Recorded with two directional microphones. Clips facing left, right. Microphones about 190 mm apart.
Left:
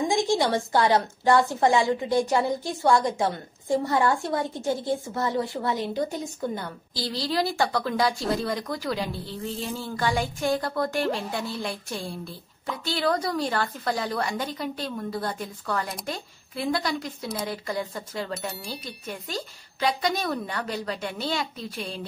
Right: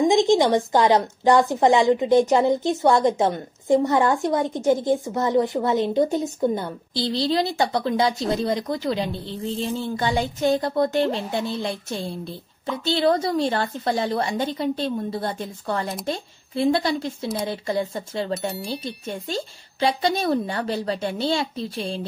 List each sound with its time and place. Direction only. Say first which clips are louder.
0.1 s a woman's voice: right 6 dB; 20° right (ahead or behind)
18.5 s speech: right 7 dB; centre (ahead or behind)
19.0 s a woman's voice: right 3 dB; 25° right (ahead or behind)